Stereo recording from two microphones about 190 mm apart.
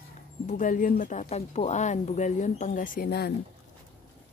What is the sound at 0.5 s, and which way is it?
Speech, 40° left (ahead or behind).